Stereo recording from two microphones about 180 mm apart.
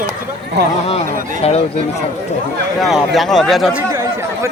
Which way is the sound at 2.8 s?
Centre (ahead or behind).